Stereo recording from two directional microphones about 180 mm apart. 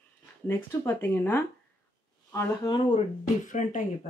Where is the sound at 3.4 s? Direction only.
45° left (ahead or behind).